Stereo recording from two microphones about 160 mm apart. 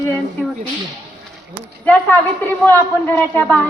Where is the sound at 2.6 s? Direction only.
10° left (ahead or behind).